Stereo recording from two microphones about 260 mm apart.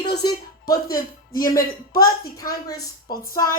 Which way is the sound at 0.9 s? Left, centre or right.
Left.